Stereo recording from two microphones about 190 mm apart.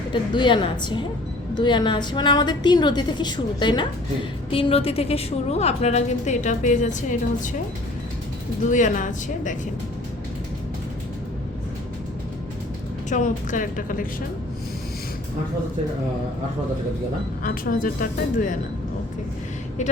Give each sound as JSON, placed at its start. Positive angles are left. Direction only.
{"t": 0.1, "sound": "a woman's voice", "side_deg": 25}
{"t": 8.7, "sound": "a woman's voice", "side_deg": 40}
{"t": 13.1, "sound": "speech", "side_deg": 40}
{"t": 17.4, "sound": "speech", "side_deg": 45}